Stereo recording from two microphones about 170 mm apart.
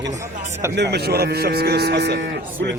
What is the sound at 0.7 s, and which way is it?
Speech, 75° right (ahead or behind).